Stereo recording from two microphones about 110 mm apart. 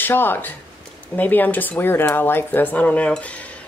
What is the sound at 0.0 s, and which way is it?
Speech, 20° left (ahead or behind).